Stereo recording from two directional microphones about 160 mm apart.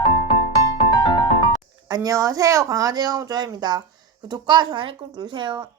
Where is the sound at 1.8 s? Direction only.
25° right (ahead or behind).